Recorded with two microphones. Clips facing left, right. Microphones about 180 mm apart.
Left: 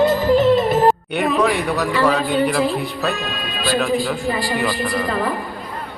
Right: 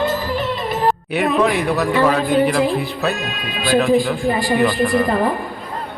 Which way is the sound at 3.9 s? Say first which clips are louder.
Right 4 dB; 20° right (ahead or behind).